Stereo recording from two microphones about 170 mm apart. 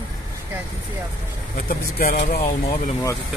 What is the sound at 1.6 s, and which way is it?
Speech, 55° left (ahead or behind).